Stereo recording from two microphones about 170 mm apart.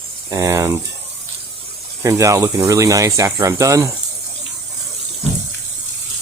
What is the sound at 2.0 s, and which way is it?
Speech, 20° right (ahead or behind).